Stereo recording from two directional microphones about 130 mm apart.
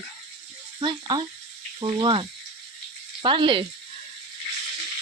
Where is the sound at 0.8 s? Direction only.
35° right (ahead or behind).